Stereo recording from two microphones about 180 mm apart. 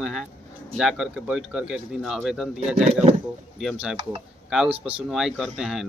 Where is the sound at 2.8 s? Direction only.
35° right (ahead or behind).